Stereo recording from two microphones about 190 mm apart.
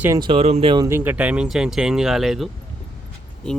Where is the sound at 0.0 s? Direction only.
20° right (ahead or behind).